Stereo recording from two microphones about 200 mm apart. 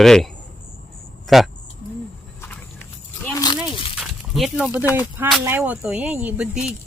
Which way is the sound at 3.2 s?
20° left (ahead or behind).